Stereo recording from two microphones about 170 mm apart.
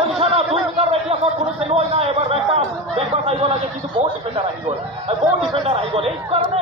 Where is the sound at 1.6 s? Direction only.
35° right (ahead or behind).